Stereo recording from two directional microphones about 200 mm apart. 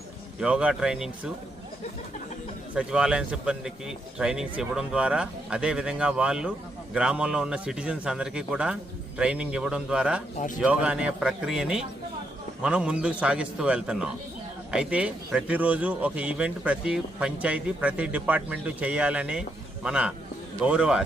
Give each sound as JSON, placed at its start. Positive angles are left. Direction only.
{"t": 0.3, "sound": "speech", "side_deg": -5}
{"t": 2.7, "sound": "speech", "side_deg": -5}
{"t": 10.3, "sound": "speech", "side_deg": 40}
{"t": 10.6, "sound": "a man's voice", "side_deg": -5}